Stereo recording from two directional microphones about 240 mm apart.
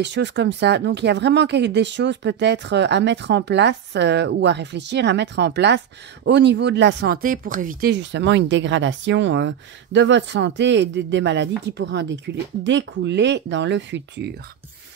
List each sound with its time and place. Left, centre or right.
0.0 s speech: right